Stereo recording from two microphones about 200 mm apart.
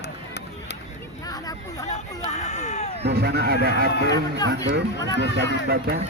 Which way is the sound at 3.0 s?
55° right (ahead or behind).